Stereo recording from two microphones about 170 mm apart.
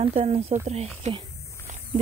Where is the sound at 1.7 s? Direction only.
45° right (ahead or behind).